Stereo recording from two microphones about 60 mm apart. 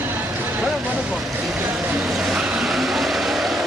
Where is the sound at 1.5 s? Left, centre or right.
Centre.